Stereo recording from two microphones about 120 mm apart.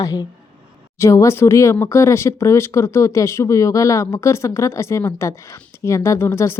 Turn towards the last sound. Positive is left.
turn(degrees=20)  # may be behind; listen again after turning